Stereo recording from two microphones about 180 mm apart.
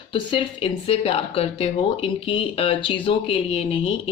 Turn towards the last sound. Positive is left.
turn(degrees=30)  # may be behind; listen again after turning